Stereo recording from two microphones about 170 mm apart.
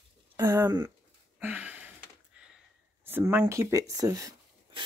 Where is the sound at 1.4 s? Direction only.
10° right (ahead or behind).